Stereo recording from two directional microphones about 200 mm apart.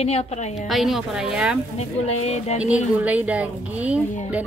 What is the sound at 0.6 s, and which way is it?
Speech, centre (ahead or behind).